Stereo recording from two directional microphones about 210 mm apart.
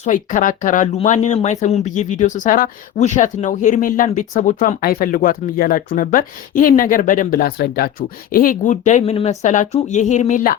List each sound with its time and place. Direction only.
0.0 s speech: 35° left (ahead or behind)